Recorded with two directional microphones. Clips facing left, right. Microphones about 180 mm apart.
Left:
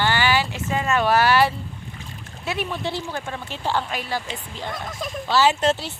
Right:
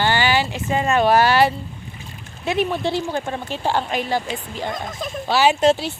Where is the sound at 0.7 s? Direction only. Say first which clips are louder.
Right 4 dB; 30° right (ahead or behind).